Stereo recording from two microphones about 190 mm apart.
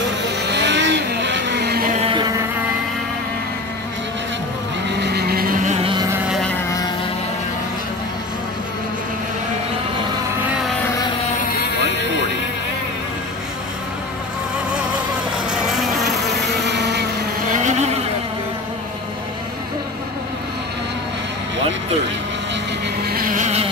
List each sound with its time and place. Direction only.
0.5 s vehicle: 65° right (ahead or behind)
2.0 s music: 30° right (ahead or behind)
4.8 s vehicle: 60° right (ahead or behind); by 6.0 s 30° right (ahead or behind)
6.2 s motorboat: centre (ahead or behind)
15.5 s insect: centre (ahead or behind)
16.6 s vehicle: 65° right (ahead or behind)
17.6 s vehicle: 35° right (ahead or behind)
23.0 s insect: 50° right (ahead or behind)